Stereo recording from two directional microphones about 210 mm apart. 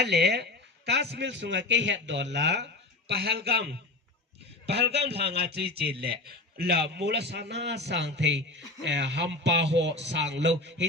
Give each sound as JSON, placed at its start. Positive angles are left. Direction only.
{"t": 0.0, "sound": "a man's voice", "side_deg": -50}